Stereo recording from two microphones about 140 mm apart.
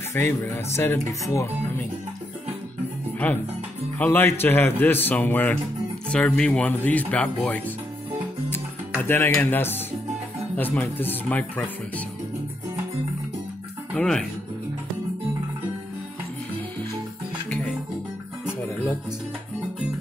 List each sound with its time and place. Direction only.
0.1 s speech: 20° left (ahead or behind)
4.0 s a man's voice: 15° left (ahead or behind)
8.5 s music: 15° left (ahead or behind)
10.5 s a man's voice: 10° left (ahead or behind)
13.9 s speech: 5° left (ahead or behind)